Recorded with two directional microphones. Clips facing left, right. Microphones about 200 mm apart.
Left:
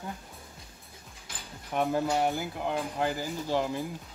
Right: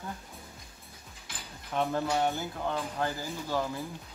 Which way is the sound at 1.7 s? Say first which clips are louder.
Left 2 dB; 10° left (ahead or behind).